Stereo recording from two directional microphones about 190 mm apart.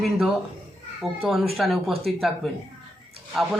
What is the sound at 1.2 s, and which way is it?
Speech, centre (ahead or behind).